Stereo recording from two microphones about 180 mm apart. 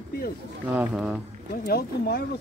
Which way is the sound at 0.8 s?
5° right (ahead or behind).